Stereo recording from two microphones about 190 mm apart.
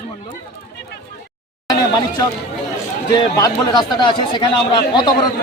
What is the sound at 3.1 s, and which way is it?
Speech, 20° left (ahead or behind).